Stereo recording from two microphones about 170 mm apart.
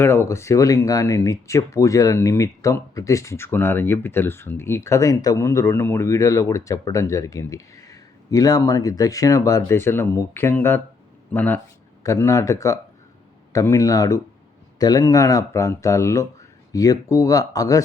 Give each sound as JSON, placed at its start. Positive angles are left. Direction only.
{"t": 0.0, "sound": "speech", "side_deg": 15}